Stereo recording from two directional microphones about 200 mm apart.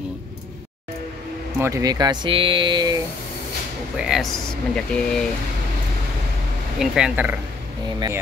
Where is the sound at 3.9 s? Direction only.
Centre (ahead or behind).